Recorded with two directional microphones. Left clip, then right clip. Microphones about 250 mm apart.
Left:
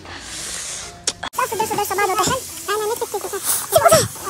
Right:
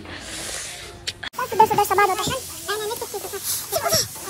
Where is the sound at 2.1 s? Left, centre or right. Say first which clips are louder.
Left 6 dB; left.